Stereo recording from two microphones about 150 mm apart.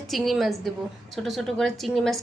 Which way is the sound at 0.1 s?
Centre (ahead or behind).